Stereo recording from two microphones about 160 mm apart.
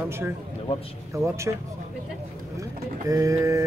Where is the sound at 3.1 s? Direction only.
20° right (ahead or behind).